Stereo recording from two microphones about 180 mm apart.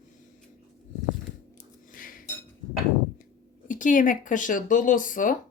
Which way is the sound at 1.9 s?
50° left (ahead or behind).